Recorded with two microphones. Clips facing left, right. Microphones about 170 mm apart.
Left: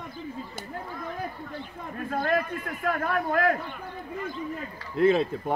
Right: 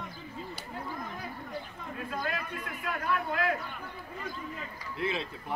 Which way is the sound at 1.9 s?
50° left (ahead or behind).